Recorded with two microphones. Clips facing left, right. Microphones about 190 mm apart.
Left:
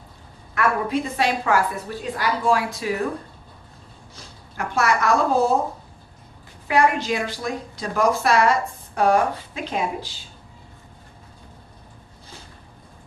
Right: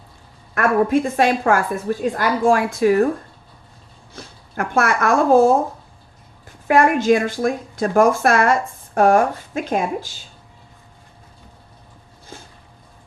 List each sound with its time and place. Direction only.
0.5 s a woman's voice: 50° right (ahead or behind)
4.1 s speech: 55° right (ahead or behind)
6.7 s a woman's voice: 50° right (ahead or behind)